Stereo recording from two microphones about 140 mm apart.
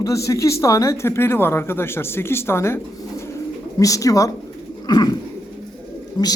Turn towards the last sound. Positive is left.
turn(degrees=30)  # may be behind; listen again after turning